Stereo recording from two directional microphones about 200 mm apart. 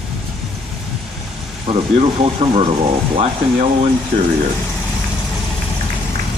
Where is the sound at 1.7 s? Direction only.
30° right (ahead or behind).